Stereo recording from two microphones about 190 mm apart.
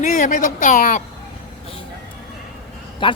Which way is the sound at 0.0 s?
40° left (ahead or behind).